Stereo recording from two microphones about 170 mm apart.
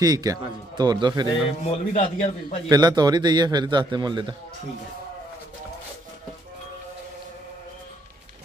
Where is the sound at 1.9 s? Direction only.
40° left (ahead or behind).